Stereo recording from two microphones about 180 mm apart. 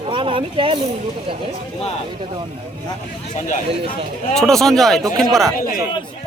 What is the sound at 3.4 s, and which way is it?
Speech, 45° left (ahead or behind).